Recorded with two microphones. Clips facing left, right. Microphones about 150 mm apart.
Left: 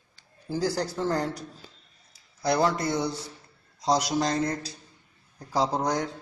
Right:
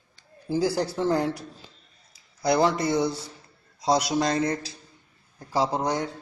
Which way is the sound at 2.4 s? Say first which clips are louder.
Right 2 dB; 5° right (ahead or behind).